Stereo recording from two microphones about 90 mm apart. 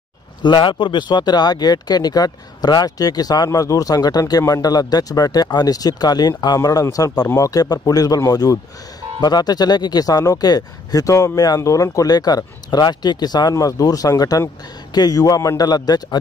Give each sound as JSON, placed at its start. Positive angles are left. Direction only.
{"t": 0.4, "sound": "speech", "side_deg": 60}